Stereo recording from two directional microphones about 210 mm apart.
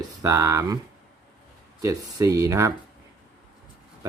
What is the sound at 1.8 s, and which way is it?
Speech, 15° right (ahead or behind).